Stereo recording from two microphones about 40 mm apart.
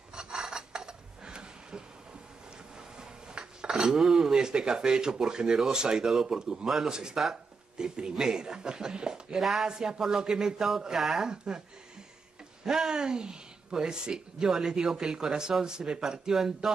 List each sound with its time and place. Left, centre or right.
0.1 s a sound: centre
3.0 s a sound: centre
5.2 s speech: centre
9.4 s speech: centre
9.7 s speech: centre
12.6 s speech: centre
16.0 s speech: centre